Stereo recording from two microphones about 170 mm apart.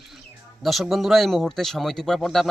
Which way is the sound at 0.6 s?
Centre (ahead or behind).